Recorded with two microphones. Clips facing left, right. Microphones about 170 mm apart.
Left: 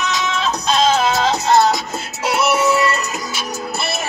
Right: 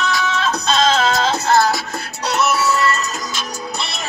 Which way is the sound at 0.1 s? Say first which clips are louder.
Right 1 dB; 20° left (ahead or behind).